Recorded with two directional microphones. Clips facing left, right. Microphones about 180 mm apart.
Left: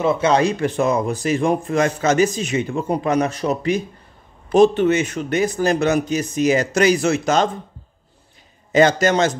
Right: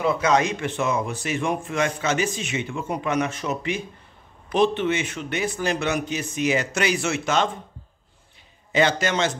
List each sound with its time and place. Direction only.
0.0 s a man's voice: 25° left (ahead or behind)
8.7 s a man's voice: 45° left (ahead or behind)